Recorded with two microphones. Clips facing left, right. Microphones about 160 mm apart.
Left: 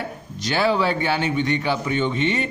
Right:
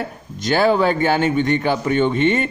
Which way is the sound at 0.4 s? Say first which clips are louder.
Right 4 dB; 50° right (ahead or behind).